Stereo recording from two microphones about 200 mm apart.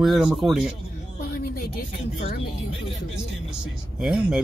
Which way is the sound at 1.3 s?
50° left (ahead or behind).